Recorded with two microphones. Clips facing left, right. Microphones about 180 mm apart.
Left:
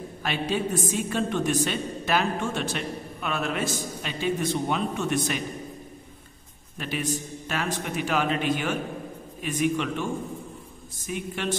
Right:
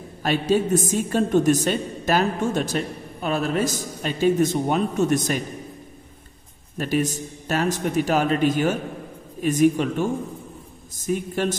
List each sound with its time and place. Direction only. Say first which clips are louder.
0.2 s a woman's voice: right 7 dB; 40° right (ahead or behind)
6.8 s a woman's voice: right 6 dB; 45° right (ahead or behind)
11.1 s a woman's voice: right 7 dB; 40° right (ahead or behind)